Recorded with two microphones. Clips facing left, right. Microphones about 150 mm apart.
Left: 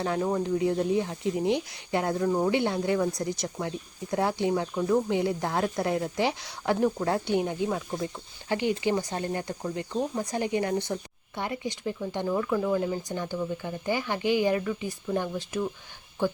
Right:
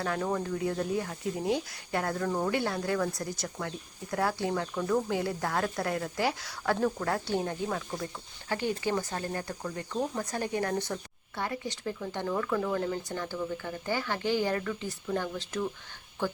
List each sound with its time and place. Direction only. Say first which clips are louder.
0.0 s speech: left 4 dB; 20° left (ahead or behind)